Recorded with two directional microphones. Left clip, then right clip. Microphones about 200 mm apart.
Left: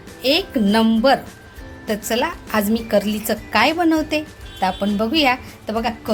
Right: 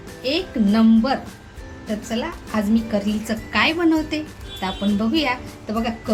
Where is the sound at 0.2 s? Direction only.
40° left (ahead or behind).